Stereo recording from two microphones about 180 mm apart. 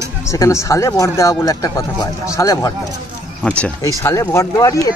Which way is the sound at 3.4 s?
5° left (ahead or behind).